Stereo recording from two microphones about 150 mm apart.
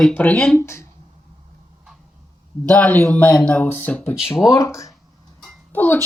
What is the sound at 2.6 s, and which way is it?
Speech, 10° left (ahead or behind).